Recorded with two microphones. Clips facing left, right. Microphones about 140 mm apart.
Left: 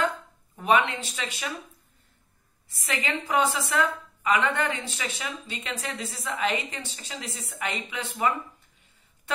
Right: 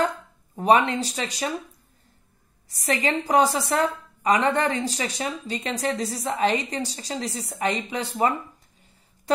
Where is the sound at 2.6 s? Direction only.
35° right (ahead or behind).